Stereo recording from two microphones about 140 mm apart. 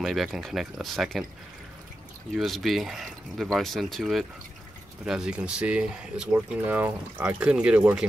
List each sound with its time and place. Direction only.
0.0 s speech: centre (ahead or behind)
2.3 s speech: centre (ahead or behind)